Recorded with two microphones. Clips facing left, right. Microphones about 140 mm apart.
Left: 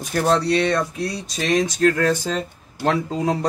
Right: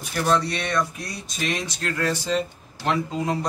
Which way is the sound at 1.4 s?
40° left (ahead or behind).